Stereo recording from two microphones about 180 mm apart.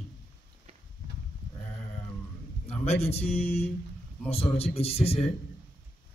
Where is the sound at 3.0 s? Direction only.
35° left (ahead or behind).